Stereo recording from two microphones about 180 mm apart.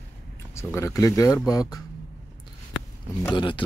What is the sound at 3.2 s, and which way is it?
Speech, 25° left (ahead or behind).